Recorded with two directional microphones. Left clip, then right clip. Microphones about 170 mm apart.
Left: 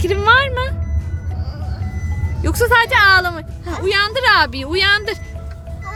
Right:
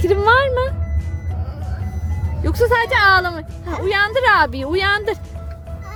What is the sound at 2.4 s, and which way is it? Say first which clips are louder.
A woman's voice: left 2 dB; 15° right (ahead or behind).